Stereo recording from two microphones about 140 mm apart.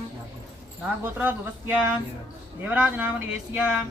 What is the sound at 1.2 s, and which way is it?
Speech, 15° right (ahead or behind).